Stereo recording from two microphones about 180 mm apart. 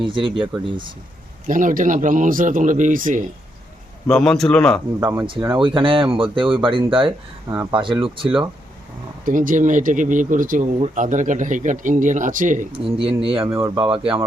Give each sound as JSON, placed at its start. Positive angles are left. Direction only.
{"t": 0.0, "sound": "speech", "side_deg": -30}
{"t": 1.5, "sound": "speech", "side_deg": -50}
{"t": 4.1, "sound": "a man's voice", "side_deg": 5}
{"t": 4.9, "sound": "speech", "side_deg": -15}
{"t": 5.5, "sound": "speech", "side_deg": -30}
{"t": 9.2, "sound": "speech", "side_deg": -50}
{"t": 12.7, "sound": "speech", "side_deg": -30}
{"t": 13.5, "sound": "speech", "side_deg": -15}
{"t": 13.9, "sound": "speech", "side_deg": -30}